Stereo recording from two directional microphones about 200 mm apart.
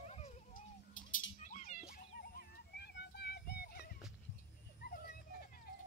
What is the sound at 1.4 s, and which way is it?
Children playing, 40° left (ahead or behind).